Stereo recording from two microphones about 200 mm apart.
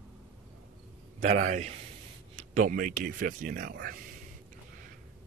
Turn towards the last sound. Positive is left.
turn(degrees=-45)  # may be behind; listen again after turning